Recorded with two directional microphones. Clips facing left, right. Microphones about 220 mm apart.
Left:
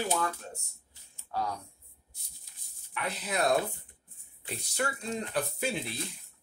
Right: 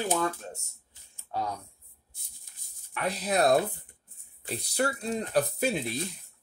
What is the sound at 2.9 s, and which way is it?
Speech, 40° right (ahead or behind).